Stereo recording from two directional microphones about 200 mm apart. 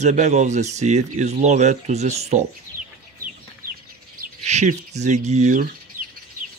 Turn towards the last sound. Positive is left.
turn(degrees=-40)  # may be behind; listen again after turning